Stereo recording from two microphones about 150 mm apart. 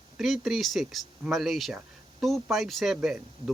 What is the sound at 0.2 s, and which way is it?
Speech, centre (ahead or behind).